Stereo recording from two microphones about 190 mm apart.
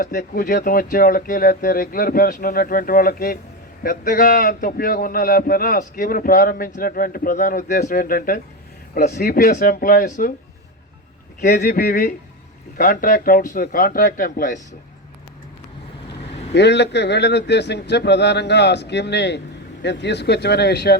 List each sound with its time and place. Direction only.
0.0 s a man's voice: 50° left (ahead or behind)
11.3 s a man's voice: 50° left (ahead or behind)
16.5 s speech: 65° left (ahead or behind)